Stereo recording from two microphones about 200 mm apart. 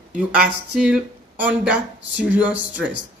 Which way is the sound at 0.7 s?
5° right (ahead or behind).